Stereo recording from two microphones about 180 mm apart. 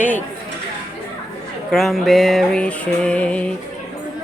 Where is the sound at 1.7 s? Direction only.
Centre (ahead or behind).